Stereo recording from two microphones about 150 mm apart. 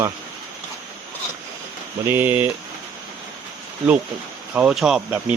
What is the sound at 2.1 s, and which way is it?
Speech, 10° right (ahead or behind).